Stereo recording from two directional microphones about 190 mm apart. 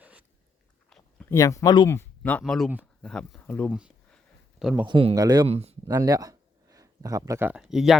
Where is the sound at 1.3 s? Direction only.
15° left (ahead or behind).